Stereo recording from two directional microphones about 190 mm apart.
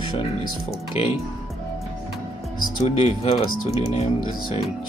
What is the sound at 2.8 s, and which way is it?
Speech, 30° left (ahead or behind).